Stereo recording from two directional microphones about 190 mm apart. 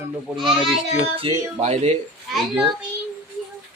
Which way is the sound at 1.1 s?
30° right (ahead or behind).